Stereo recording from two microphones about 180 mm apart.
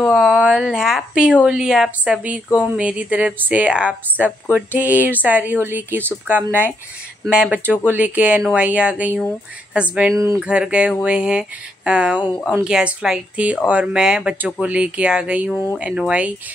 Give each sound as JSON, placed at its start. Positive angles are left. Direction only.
{"t": 0.0, "sound": "speech", "side_deg": 0}
{"t": 10.1, "sound": "speech", "side_deg": -15}
{"t": 10.4, "sound": "speech", "side_deg": -5}
{"t": 15.5, "sound": "speech", "side_deg": 15}
{"t": 15.8, "sound": "speech", "side_deg": -5}